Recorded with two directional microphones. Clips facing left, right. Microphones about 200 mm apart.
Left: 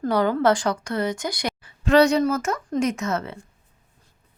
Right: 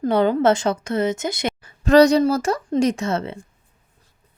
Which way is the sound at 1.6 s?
40° right (ahead or behind).